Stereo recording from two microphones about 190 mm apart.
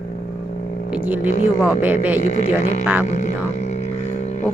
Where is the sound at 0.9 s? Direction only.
10° right (ahead or behind).